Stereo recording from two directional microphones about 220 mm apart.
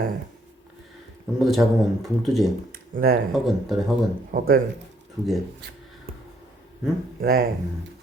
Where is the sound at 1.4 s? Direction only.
Centre (ahead or behind).